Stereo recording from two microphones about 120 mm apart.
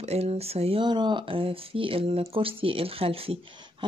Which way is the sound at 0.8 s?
40° right (ahead or behind).